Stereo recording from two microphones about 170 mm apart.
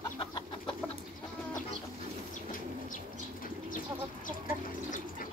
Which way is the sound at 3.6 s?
50° left (ahead or behind).